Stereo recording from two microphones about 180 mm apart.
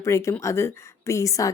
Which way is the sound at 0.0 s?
15° left (ahead or behind).